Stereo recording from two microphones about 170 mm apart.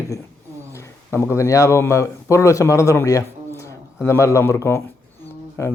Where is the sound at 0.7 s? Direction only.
15° left (ahead or behind).